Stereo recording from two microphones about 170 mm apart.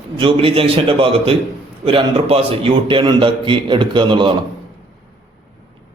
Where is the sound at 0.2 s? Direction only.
30° right (ahead or behind).